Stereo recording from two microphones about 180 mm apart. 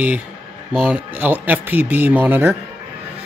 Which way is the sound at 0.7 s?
10° right (ahead or behind).